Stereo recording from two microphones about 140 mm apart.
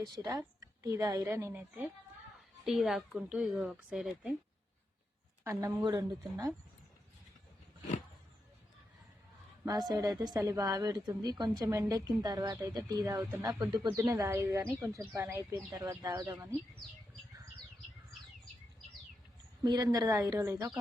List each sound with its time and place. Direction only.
0.3 s a woman's voice: 25° right (ahead or behind)
2.6 s speech: centre (ahead or behind)
5.5 s a woman's voice: 20° right (ahead or behind)
9.6 s a woman's voice: 30° right (ahead or behind)
19.6 s a woman's voice: 30° right (ahead or behind)